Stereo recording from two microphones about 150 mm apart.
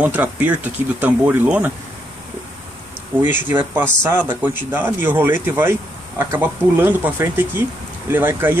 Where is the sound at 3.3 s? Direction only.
15° right (ahead or behind).